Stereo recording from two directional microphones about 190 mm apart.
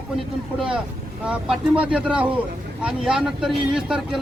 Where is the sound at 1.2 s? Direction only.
5° right (ahead or behind).